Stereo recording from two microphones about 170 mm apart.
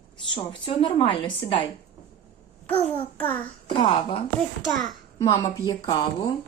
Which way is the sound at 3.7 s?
30° left (ahead or behind).